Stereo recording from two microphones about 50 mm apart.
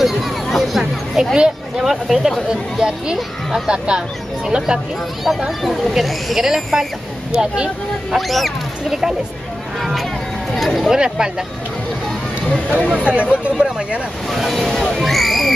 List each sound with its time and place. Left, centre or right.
0.0 s speech: centre
1.3 s speech: centre
5.6 s speech: centre
7.3 s speech: centre
8.1 s speech: centre
10.9 s speech: centre
12.9 s speech: right
14.3 s speech: centre